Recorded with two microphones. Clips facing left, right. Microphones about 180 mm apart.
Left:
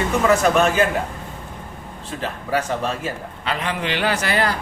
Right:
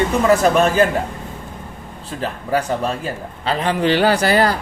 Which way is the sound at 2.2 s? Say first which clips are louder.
Right 3 dB; 35° right (ahead or behind).